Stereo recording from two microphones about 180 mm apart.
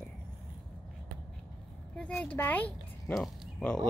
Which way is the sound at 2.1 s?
10° left (ahead or behind).